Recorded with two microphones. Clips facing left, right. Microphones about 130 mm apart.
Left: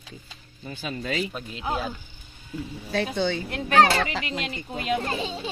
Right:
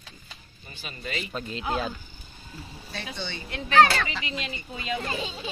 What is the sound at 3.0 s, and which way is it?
Speech, 50° left (ahead or behind).